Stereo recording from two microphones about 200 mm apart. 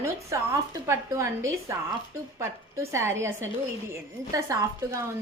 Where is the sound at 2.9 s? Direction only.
15° right (ahead or behind).